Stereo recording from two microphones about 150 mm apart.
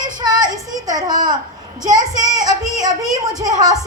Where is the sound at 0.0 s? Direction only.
30° right (ahead or behind).